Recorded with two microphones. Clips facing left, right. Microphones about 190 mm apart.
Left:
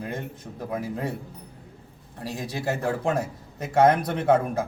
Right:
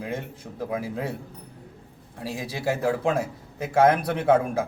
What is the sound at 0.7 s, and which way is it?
Speech, 5° right (ahead or behind).